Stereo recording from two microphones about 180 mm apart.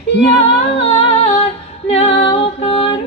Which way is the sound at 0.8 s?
35° left (ahead or behind).